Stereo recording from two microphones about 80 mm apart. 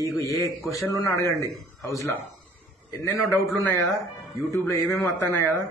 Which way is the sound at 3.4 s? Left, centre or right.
Left.